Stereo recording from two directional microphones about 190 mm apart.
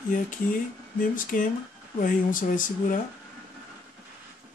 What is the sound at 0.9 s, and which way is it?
Speech, 45° left (ahead or behind).